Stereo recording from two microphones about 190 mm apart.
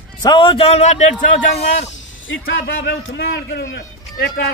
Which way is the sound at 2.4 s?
55° left (ahead or behind).